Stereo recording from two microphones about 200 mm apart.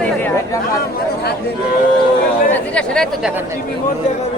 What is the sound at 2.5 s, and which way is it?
Speech, 5° left (ahead or behind).